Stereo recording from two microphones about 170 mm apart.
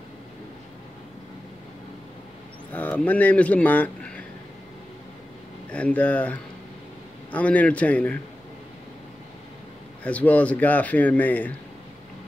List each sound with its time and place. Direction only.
2.7 s a man's voice: 10° left (ahead or behind)
5.7 s a man's voice: 10° left (ahead or behind)
10.0 s a man's voice: 10° left (ahead or behind)